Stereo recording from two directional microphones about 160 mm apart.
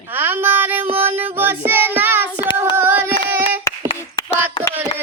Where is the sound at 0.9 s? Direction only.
15° right (ahead or behind).